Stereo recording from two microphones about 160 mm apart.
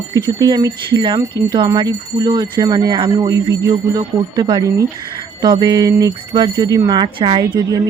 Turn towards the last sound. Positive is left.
turn(degrees=-25)  # may be behind; listen again after turning